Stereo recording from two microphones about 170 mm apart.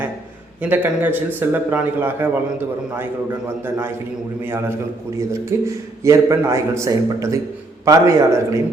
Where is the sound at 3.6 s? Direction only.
10° right (ahead or behind).